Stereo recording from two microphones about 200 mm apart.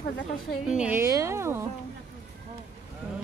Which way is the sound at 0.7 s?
5° right (ahead or behind).